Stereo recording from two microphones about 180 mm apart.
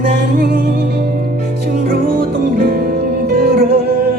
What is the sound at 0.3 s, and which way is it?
Music, 60° right (ahead or behind).